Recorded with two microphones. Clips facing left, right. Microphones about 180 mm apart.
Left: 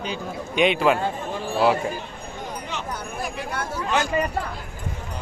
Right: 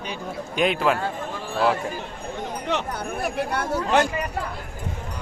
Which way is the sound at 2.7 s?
70° right (ahead or behind).